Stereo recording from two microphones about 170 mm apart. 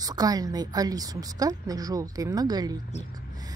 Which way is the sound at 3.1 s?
25° right (ahead or behind).